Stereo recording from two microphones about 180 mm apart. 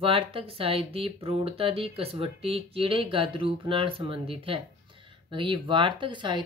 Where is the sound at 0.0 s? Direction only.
30° right (ahead or behind).